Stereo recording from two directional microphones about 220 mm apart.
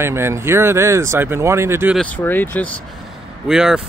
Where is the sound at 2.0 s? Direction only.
5° left (ahead or behind).